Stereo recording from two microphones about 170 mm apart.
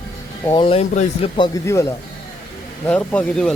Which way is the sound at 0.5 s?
35° left (ahead or behind).